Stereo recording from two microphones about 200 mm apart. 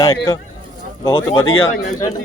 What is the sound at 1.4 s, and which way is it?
Speech, 90° left.